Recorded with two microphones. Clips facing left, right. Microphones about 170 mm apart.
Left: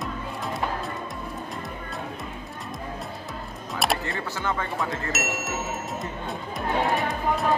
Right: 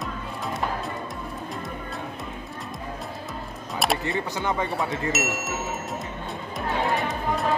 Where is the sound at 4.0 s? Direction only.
20° right (ahead or behind).